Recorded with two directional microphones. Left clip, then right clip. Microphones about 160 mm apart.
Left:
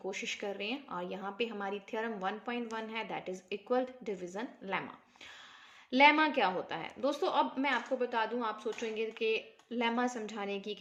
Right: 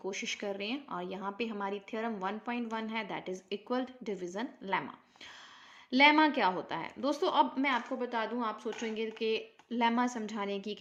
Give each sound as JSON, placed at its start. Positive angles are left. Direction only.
{"t": 0.1, "sound": "a woman's voice", "side_deg": -25}
{"t": 5.9, "sound": "a woman's voice", "side_deg": -30}